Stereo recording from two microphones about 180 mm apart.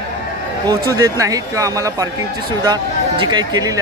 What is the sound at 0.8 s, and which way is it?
Speech, 20° right (ahead or behind).